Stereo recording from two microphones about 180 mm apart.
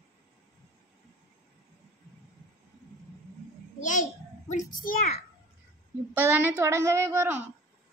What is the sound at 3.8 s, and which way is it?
A child's voice, 45° left (ahead or behind).